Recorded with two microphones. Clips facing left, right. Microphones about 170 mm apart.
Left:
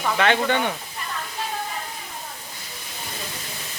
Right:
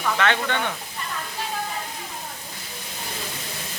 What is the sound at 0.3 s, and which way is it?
Speech, 15° left (ahead or behind).